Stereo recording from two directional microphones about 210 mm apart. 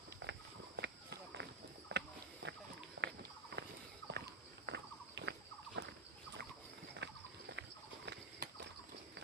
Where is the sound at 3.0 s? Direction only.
70° right (ahead or behind).